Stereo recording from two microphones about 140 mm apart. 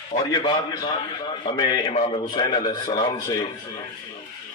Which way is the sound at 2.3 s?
30° left (ahead or behind).